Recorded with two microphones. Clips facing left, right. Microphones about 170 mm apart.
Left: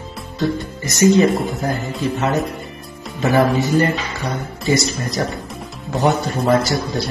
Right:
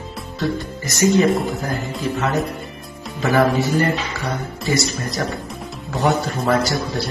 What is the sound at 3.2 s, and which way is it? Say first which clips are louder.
Speech: left 1 dB; 20° left (ahead or behind).